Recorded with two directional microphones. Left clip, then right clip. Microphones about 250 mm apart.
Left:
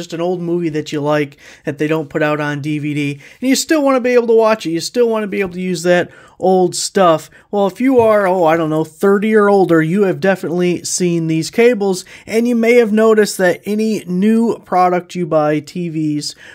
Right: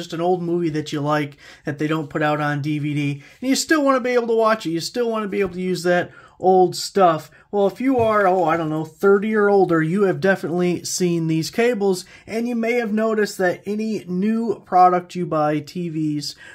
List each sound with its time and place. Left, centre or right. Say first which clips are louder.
0.0 s speech: left 2 dB; left